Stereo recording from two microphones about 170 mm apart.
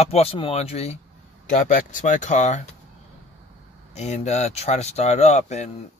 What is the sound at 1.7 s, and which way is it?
Speech, 50° left (ahead or behind).